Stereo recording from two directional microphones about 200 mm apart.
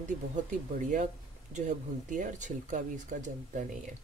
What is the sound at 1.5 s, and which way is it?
Speech, 40° right (ahead or behind).